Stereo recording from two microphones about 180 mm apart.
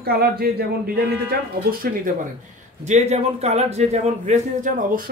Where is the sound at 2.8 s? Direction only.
40° right (ahead or behind).